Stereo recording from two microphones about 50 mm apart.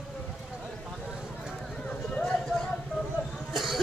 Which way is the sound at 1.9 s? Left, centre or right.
Centre.